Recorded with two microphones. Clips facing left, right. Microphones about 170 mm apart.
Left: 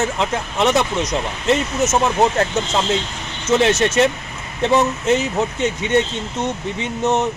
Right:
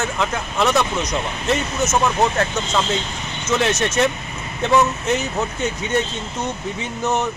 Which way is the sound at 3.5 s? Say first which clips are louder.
Left 4 dB; 30° left (ahead or behind).